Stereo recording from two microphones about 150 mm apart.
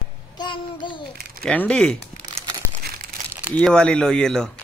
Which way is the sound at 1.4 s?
10° left (ahead or behind).